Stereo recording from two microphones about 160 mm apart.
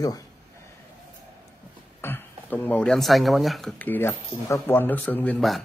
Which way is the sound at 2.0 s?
10° left (ahead or behind).